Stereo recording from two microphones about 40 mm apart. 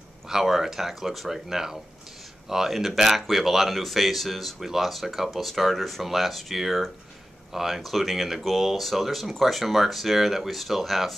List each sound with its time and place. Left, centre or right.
0.3 s speech: centre